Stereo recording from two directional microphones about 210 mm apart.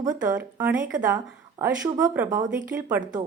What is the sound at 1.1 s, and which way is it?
A woman's voice, 15° right (ahead or behind).